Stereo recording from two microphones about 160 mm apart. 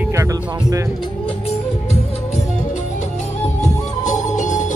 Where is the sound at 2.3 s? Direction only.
45° left (ahead or behind).